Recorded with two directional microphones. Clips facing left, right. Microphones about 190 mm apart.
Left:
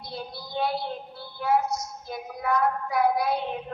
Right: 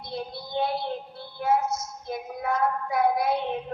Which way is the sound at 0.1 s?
25° right (ahead or behind).